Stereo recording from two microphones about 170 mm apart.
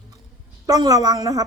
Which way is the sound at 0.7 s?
20° right (ahead or behind).